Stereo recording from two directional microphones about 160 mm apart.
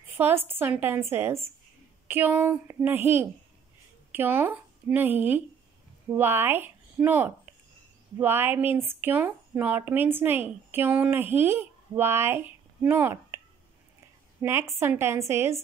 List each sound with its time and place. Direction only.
0.5 s a woman's voice: 15° right (ahead or behind)
14.4 s speech: 15° right (ahead or behind)